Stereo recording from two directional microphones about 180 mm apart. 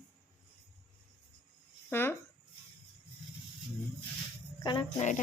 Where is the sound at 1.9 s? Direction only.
15° left (ahead or behind).